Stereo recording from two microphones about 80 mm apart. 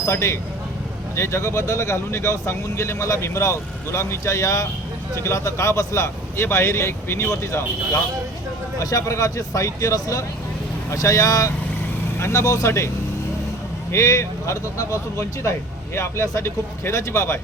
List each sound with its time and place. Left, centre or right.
0.0 s speech: left
8.8 s speech: left
13.9 s speech: left